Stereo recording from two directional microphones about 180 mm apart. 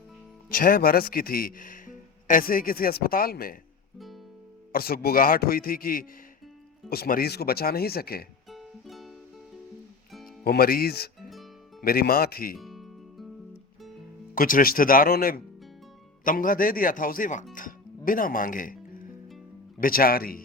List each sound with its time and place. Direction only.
0.5 s speech: 50° left (ahead or behind)
3.9 s music: centre (ahead or behind)
4.7 s speech: 55° left (ahead or behind)
8.4 s music: centre (ahead or behind)
10.4 s speech: 55° left (ahead or behind)
12.5 s music: centre (ahead or behind)
14.3 s speech: 50° left (ahead or behind)
17.5 s music: 50° left (ahead or behind)
19.8 s speech: 55° left (ahead or behind)